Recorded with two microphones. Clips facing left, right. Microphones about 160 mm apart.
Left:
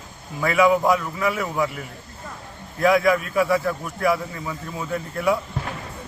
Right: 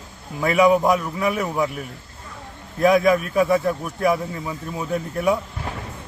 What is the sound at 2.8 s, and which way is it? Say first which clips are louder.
A man's voice: right 2 dB; 20° right (ahead or behind).